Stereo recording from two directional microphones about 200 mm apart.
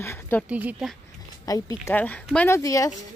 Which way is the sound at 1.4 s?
15° left (ahead or behind).